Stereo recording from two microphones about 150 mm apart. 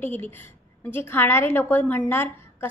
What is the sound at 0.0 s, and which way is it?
A woman's voice, 15° left (ahead or behind).